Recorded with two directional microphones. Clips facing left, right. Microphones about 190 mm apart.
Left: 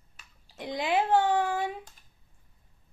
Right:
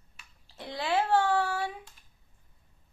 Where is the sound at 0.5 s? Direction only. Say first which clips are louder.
Left 2 dB; 15° left (ahead or behind).